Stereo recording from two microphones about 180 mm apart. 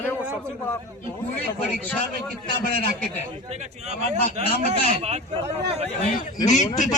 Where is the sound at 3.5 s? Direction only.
40° right (ahead or behind).